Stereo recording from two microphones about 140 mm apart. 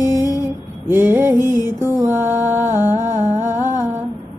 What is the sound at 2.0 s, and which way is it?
Mantra, 15° right (ahead or behind).